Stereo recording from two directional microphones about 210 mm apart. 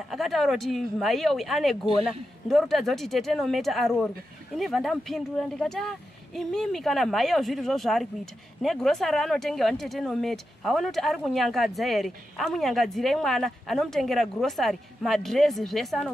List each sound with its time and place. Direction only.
0.1 s speech: centre (ahead or behind)